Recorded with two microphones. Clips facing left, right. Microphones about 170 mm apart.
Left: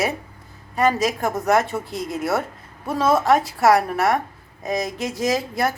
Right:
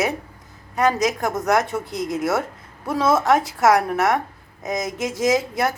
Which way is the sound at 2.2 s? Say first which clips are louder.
Left 1 dB; centre (ahead or behind).